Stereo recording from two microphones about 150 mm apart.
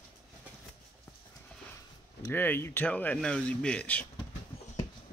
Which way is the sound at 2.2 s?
15° left (ahead or behind).